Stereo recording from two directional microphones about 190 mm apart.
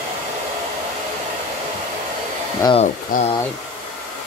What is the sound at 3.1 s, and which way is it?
Speech, 50° left (ahead or behind).